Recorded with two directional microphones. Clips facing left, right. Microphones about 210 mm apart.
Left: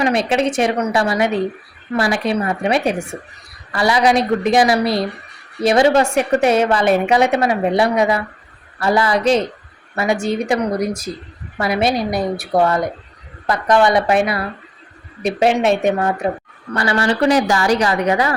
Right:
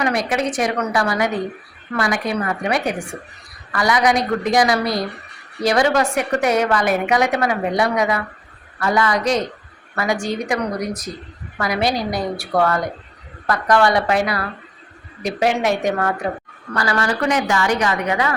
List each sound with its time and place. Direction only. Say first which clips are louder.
0.0 s a woman's voice: left 4 dB; 25° left (ahead or behind)